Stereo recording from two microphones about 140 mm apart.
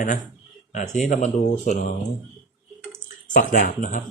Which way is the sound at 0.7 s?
60° left (ahead or behind).